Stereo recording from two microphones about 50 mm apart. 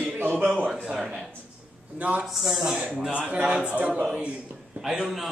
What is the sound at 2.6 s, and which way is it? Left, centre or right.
A man's voice, centre.